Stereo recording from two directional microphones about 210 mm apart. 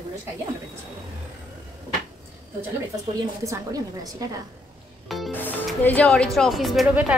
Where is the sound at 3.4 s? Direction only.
15° right (ahead or behind).